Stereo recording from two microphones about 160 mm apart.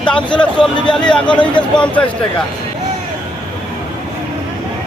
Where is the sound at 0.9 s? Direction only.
5° left (ahead or behind).